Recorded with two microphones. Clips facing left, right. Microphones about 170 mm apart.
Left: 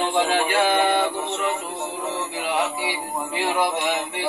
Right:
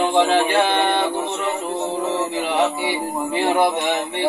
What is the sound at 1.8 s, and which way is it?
Music, 30° right (ahead or behind).